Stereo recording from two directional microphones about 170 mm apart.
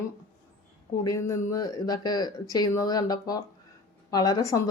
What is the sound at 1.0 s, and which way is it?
Speech, 20° left (ahead or behind).